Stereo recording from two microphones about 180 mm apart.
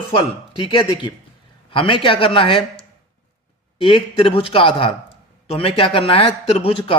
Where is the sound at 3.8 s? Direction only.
30° left (ahead or behind).